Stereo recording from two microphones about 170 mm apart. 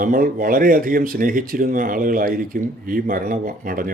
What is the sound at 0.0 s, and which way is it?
Speech, 55° right (ahead or behind).